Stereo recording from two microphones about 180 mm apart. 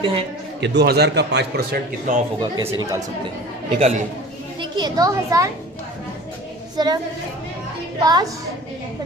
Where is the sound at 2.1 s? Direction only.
45° right (ahead or behind).